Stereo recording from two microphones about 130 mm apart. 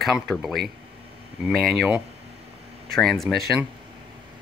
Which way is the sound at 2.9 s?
Centre (ahead or behind).